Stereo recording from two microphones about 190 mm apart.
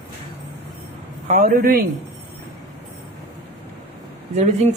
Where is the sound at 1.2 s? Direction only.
45° right (ahead or behind).